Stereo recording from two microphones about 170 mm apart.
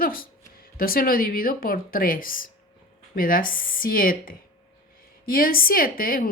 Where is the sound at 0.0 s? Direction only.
55° left (ahead or behind).